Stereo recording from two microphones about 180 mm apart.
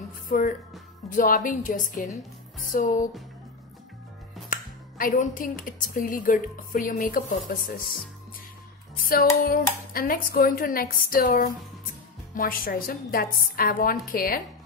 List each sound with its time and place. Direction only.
0.3 s speech: 50° left (ahead or behind)
4.5 s speech: 50° left (ahead or behind)
9.4 s speech: 55° left (ahead or behind)